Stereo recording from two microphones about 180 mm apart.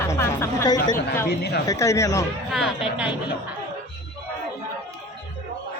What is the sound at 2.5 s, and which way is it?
Speech, 5° right (ahead or behind).